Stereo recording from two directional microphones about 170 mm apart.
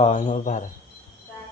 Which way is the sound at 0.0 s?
45° left (ahead or behind).